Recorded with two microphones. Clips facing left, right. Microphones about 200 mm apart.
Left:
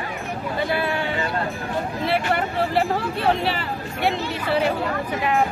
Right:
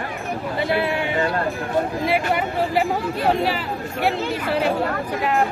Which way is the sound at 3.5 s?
5° right (ahead or behind).